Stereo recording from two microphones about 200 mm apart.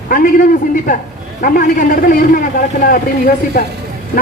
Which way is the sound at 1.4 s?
45° left (ahead or behind).